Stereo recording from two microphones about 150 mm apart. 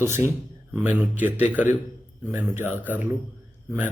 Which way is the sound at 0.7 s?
10° right (ahead or behind).